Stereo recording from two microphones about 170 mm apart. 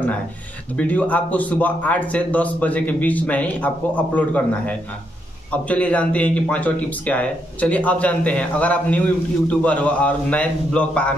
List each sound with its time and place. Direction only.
0.7 s speech: 10° left (ahead or behind)